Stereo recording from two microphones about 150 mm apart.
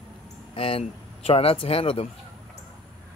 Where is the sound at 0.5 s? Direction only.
35° left (ahead or behind).